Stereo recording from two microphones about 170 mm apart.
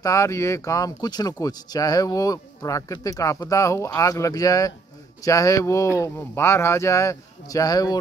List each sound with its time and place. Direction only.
0.0 s speech: 20° left (ahead or behind)